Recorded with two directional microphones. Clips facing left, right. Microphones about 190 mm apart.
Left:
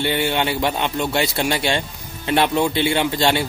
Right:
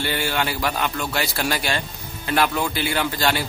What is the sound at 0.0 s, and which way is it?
Speech, 25° left (ahead or behind).